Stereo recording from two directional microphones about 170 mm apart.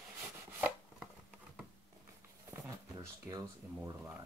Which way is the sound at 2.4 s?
15° right (ahead or behind).